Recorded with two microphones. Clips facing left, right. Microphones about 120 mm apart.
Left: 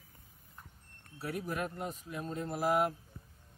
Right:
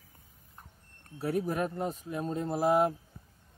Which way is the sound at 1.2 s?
35° right (ahead or behind).